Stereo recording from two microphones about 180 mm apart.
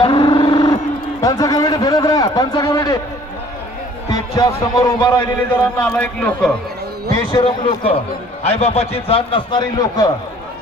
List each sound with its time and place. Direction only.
0.0 s vehicle: 25° left (ahead or behind)
1.2 s a sound: 20° left (ahead or behind)
4.1 s speech: 20° left (ahead or behind)
5.8 s a man's voice: 5° left (ahead or behind)
7.3 s a man's voice: 30° left (ahead or behind)